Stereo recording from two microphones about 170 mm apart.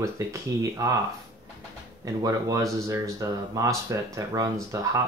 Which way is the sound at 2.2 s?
20° right (ahead or behind).